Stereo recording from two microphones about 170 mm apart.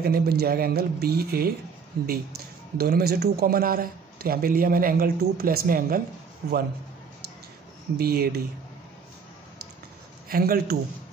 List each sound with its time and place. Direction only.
0.0 s a man's voice: 65° right (ahead or behind)
6.4 s speech: 65° right (ahead or behind)
8.0 s speech: 65° right (ahead or behind)
10.3 s a man's voice: 60° right (ahead or behind)